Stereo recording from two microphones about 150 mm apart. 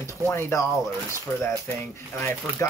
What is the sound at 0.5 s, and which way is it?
Speech, 20° left (ahead or behind).